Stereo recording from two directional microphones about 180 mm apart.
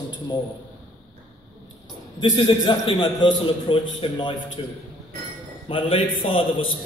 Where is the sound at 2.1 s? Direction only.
25° left (ahead or behind).